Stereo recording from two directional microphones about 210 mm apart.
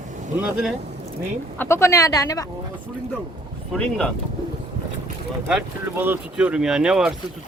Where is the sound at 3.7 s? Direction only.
5° left (ahead or behind).